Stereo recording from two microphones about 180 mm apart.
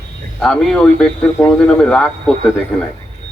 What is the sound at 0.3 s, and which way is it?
Speech, 5° left (ahead or behind).